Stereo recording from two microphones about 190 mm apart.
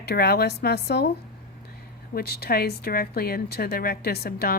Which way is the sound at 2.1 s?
55° left (ahead or behind).